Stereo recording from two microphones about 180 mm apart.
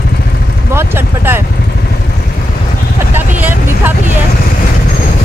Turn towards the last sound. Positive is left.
turn(degrees=-10)  # may be behind; listen again after turning